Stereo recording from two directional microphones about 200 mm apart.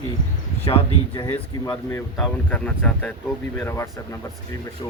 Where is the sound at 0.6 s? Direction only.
30° left (ahead or behind).